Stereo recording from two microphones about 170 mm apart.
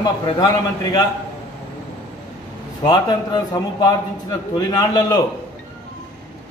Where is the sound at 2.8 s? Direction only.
25° left (ahead or behind).